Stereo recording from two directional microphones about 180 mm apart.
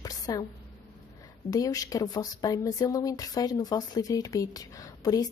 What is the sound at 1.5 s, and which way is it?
Speech, 20° left (ahead or behind).